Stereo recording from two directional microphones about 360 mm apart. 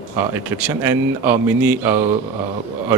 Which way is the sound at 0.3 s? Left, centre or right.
Centre.